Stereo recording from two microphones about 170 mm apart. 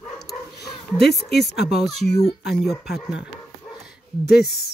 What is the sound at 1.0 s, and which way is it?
Speech, centre (ahead or behind).